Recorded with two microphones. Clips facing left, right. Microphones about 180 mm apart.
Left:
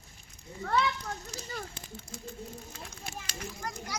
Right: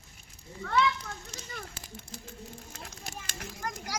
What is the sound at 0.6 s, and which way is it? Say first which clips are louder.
Children playing: right 1 dB; 35° left (ahead or behind).